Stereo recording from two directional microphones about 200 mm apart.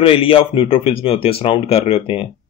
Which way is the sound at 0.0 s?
25° left (ahead or behind).